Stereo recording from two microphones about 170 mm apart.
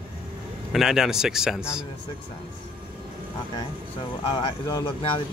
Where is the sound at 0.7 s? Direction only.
Centre (ahead or behind).